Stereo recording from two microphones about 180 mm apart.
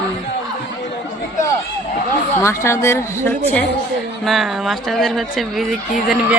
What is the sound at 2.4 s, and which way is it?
Speech, 15° left (ahead or behind).